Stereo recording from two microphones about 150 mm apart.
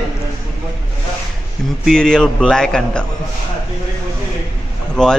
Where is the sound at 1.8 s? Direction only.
5° left (ahead or behind).